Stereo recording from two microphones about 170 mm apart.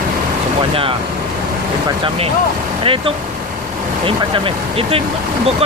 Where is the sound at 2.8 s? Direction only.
30° right (ahead or behind).